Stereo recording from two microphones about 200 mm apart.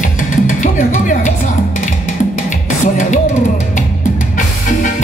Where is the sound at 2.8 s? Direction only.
35° left (ahead or behind).